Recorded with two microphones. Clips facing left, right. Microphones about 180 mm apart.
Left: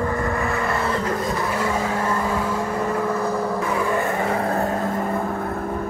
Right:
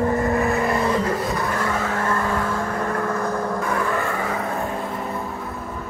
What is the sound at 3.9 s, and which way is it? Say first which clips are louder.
Vehicle: left 2 dB; 20° left (ahead or behind).